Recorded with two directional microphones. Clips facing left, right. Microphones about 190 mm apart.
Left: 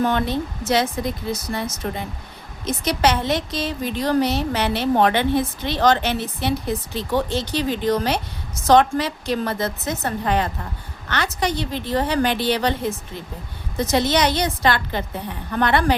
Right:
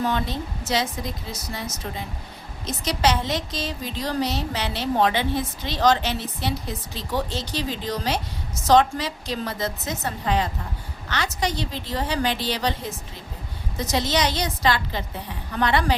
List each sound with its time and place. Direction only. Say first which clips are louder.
0.0 s a woman's voice: left 5 dB; 60° left (ahead or behind)